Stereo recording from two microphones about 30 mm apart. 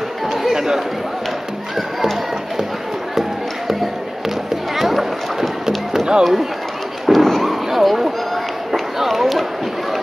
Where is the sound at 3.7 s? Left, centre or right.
Centre.